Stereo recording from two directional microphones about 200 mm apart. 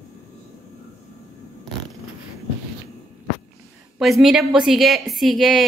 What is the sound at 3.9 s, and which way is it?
A woman's voice, centre (ahead or behind).